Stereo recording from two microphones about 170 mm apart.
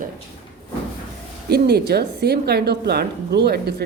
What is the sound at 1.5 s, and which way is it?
A woman's voice, 70° right (ahead or behind).